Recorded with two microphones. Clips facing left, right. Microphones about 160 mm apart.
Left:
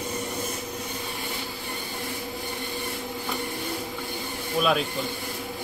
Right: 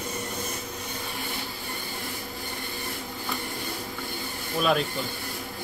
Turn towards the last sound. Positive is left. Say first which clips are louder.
# left 1 dB
turn(degrees=0)  # may be behind; listen again after turning